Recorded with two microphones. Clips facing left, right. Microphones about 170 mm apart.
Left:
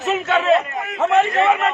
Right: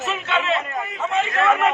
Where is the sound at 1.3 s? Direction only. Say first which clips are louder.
Left 2 dB; 20° left (ahead or behind).